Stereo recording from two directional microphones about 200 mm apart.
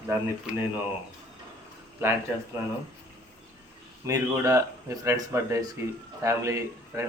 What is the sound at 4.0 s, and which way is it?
Speech, 15° right (ahead or behind).